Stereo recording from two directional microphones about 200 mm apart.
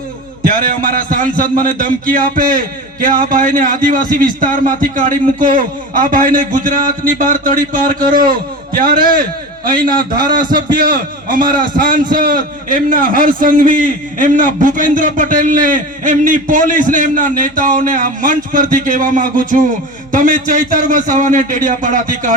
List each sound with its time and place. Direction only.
0.4 s a man's voice: 45° right (ahead or behind)